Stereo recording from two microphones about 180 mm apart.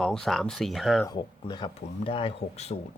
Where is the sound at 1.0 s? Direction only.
25° left (ahead or behind).